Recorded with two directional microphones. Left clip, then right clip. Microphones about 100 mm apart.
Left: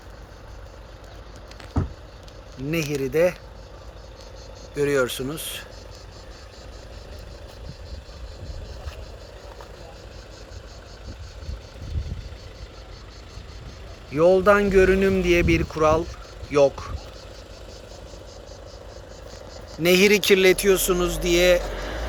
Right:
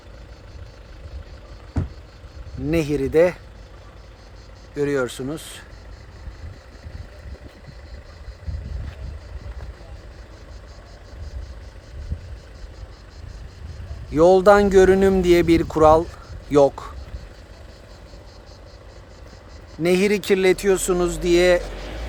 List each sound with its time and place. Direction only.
2.6 s speech: 45° right (ahead or behind)
4.7 s speech: 50° right (ahead or behind)
14.1 s speech: 60° right (ahead or behind)
19.8 s speech: 50° right (ahead or behind)